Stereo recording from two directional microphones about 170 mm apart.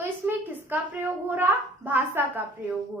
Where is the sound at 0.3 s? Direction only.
10° right (ahead or behind).